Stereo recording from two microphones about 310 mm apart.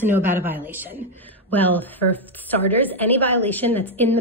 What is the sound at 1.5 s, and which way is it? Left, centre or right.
A woman's voice, centre.